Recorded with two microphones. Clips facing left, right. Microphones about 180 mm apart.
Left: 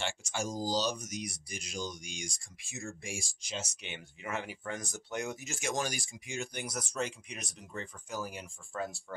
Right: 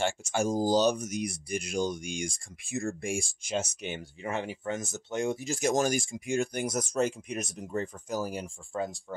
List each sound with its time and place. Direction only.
0.0 s speech: 50° right (ahead or behind)
4.3 s speech: 25° right (ahead or behind)
8.7 s speech: 20° right (ahead or behind)